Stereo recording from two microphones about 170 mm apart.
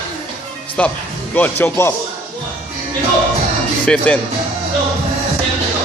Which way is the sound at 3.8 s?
10° left (ahead or behind).